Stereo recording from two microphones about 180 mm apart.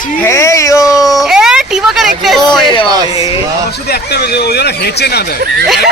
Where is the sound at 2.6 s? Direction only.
25° left (ahead or behind).